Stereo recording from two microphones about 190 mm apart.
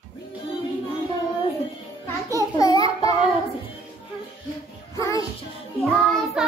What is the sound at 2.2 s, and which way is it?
Speech, 15° left (ahead or behind).